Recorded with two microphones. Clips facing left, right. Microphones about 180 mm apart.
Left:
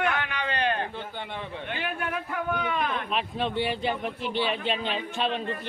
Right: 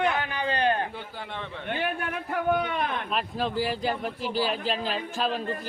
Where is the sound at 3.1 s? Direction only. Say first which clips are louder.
Right 1 dB; centre (ahead or behind).